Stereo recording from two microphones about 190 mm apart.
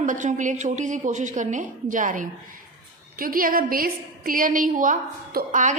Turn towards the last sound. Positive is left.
turn(degrees=-45)  # may be behind; listen again after turning